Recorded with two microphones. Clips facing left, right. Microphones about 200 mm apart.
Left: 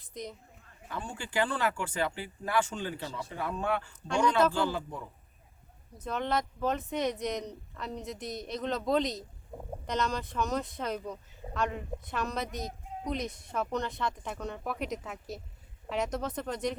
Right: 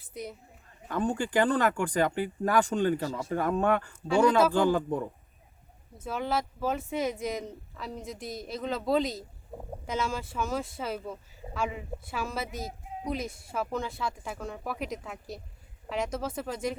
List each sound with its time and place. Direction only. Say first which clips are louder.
0.1 s a woman's voice: right 2 dB; 10° right (ahead or behind)
0.9 s speech: right 10 dB; 40° right (ahead or behind)
6.1 s speech: right 1 dB; 5° right (ahead or behind)